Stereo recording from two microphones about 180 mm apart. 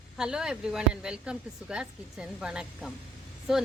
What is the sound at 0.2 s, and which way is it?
A woman's voice, 5° right (ahead or behind).